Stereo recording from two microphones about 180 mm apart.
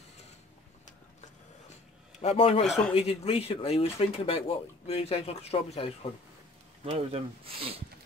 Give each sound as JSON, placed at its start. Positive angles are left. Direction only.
{"t": 2.2, "sound": "speech", "side_deg": 35}
{"t": 6.8, "sound": "speech", "side_deg": -35}